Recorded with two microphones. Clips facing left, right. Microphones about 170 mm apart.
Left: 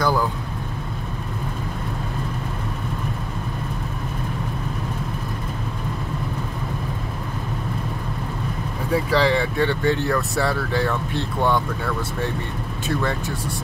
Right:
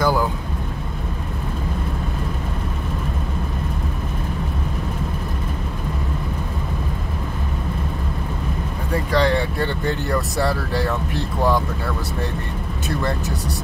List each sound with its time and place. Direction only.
0.0 s vehicle: 10° right (ahead or behind)
8.9 s speech: 5° left (ahead or behind)